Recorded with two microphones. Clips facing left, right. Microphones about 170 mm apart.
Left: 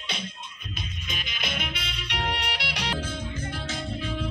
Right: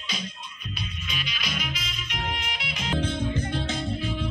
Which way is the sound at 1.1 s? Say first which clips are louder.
Left 1 dB; 50° left (ahead or behind).